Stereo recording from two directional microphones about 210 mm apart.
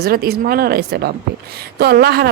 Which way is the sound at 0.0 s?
50° right (ahead or behind).